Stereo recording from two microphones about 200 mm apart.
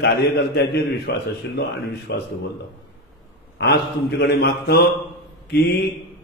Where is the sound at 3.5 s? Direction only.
55° left (ahead or behind).